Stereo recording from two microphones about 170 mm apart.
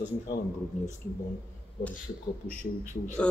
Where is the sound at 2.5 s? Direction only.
50° left (ahead or behind).